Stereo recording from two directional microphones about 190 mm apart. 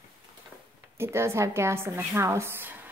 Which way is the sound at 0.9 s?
15° right (ahead or behind).